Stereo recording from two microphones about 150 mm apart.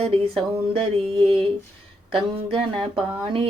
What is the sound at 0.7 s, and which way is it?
A woman's voice, 40° right (ahead or behind).